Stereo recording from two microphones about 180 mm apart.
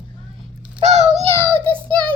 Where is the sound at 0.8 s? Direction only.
40° right (ahead or behind).